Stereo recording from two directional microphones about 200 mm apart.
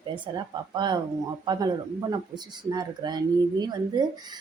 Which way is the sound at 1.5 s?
20° right (ahead or behind).